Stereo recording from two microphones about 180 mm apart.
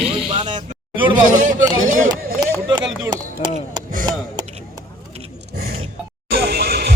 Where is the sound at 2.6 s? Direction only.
25° right (ahead or behind).